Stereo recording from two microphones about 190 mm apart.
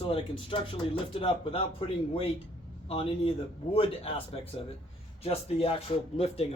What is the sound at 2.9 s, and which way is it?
Speech, 30° left (ahead or behind).